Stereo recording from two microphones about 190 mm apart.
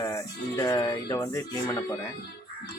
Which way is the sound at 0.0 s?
15° left (ahead or behind).